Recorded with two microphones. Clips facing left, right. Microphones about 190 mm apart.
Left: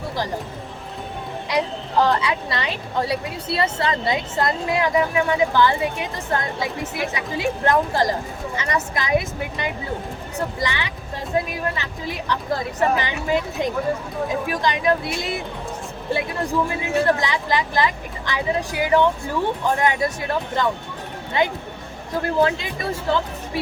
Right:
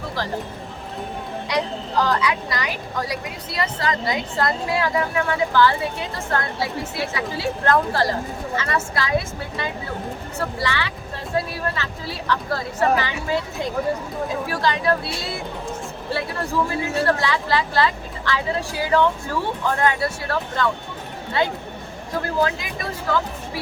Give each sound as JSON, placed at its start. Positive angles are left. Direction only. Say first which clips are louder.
{"t": 2.0, "sound": "a woman's voice", "louder": "left 1 dB", "side_deg": 25}
{"t": 16.6, "sound": "a woman's voice", "louder": "left 2 dB", "side_deg": 20}